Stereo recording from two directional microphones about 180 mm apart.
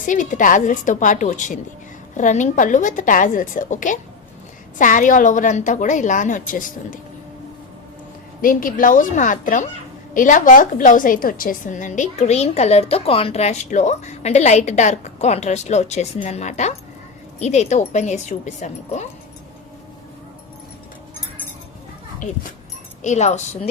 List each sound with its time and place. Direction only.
0.0 s a woman's voice: 45° left (ahead or behind)
8.4 s a woman's voice: 50° left (ahead or behind)
23.0 s a woman's voice: 40° left (ahead or behind)